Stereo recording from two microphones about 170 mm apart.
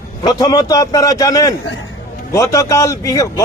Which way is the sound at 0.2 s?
25° left (ahead or behind).